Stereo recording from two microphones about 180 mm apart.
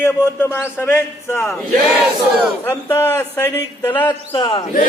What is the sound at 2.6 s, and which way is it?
A man's voice, 15° left (ahead or behind).